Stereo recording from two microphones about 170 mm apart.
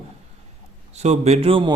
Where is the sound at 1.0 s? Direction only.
40° right (ahead or behind).